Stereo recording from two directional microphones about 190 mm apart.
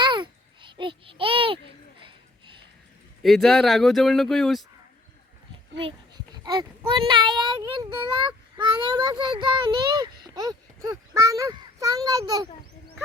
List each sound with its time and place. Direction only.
0.0 s a sound: 25° right (ahead or behind)
3.2 s speech: centre (ahead or behind)
6.3 s a child's voice: 20° right (ahead or behind)